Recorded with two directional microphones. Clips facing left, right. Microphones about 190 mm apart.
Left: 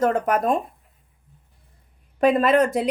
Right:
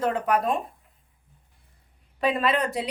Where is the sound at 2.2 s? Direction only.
45° left (ahead or behind).